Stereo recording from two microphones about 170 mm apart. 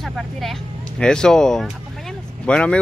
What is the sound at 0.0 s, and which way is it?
Speech, centre (ahead or behind).